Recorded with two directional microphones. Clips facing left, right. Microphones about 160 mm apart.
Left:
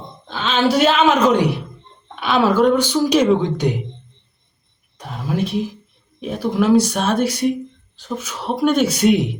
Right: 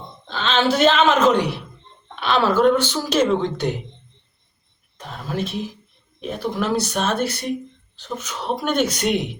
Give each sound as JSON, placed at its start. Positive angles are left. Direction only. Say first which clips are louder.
{"t": 0.3, "sound": "speech", "louder": "left 2 dB", "side_deg": 10}
{"t": 2.2, "sound": "speech", "louder": "left 2 dB", "side_deg": 10}
{"t": 4.9, "sound": "speech", "louder": "left 4 dB", "side_deg": 10}